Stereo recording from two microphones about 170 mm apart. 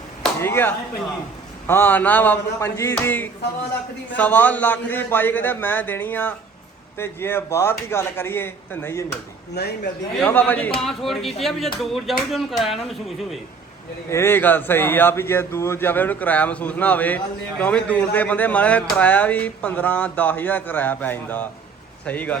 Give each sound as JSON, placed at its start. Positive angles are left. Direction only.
{"t": 0.3, "sound": "speech", "side_deg": 15}
{"t": 9.6, "sound": "a man's voice", "side_deg": 75}
{"t": 10.2, "sound": "speech", "side_deg": 10}
{"t": 14.1, "sound": "speech", "side_deg": 15}